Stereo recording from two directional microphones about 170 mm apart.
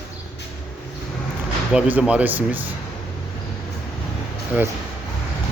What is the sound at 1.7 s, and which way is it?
Speech, 5° right (ahead or behind).